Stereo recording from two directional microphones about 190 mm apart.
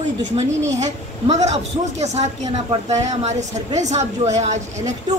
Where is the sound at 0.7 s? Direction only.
35° right (ahead or behind).